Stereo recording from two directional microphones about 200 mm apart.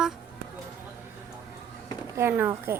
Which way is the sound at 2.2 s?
10° right (ahead or behind).